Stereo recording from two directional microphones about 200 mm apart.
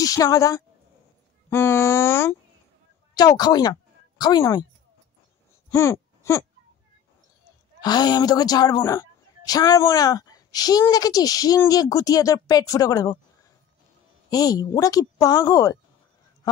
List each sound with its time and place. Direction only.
0.0 s a woman's voice: 15° left (ahead or behind)
5.7 s a sound: 15° left (ahead or behind)
7.8 s a woman's voice: 20° left (ahead or behind)
14.3 s a woman's voice: 20° left (ahead or behind)